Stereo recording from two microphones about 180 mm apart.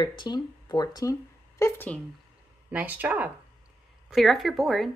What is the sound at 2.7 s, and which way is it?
Speech, 10° right (ahead or behind).